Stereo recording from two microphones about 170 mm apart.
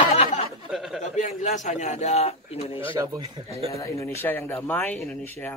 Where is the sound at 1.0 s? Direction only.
45° left (ahead or behind).